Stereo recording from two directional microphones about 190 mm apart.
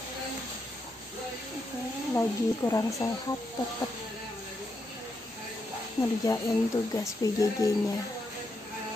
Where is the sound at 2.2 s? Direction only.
15° left (ahead or behind).